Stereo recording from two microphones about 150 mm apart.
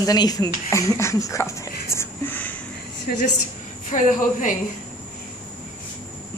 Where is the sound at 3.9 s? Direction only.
55° left (ahead or behind).